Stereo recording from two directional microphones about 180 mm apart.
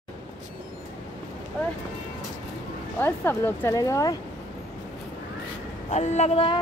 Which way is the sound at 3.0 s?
10° left (ahead or behind).